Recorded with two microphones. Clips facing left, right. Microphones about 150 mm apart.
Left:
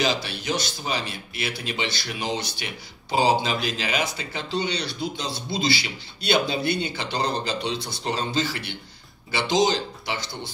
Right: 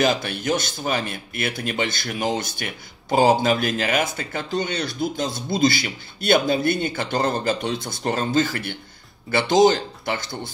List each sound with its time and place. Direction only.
0.0 s speech: 50° right (ahead or behind)